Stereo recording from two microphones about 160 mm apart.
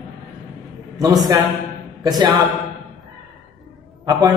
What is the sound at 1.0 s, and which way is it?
A man's voice, 25° right (ahead or behind).